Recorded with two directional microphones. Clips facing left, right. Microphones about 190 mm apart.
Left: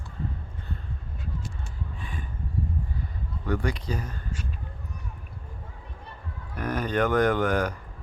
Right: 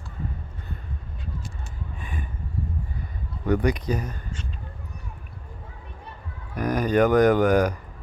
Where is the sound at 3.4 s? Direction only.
20° right (ahead or behind).